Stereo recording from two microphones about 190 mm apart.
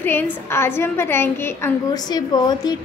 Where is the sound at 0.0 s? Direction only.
10° left (ahead or behind).